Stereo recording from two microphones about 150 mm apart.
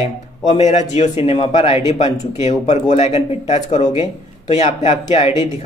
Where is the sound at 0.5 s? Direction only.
50° left (ahead or behind).